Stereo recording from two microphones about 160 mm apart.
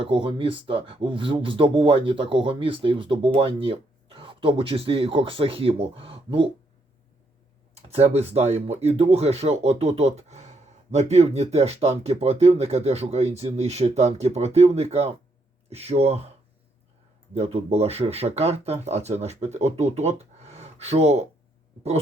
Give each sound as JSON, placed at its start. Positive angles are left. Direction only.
{"t": 0.0, "sound": "speech", "side_deg": -35}
{"t": 7.8, "sound": "speech", "side_deg": -40}
{"t": 17.3, "sound": "speech", "side_deg": -40}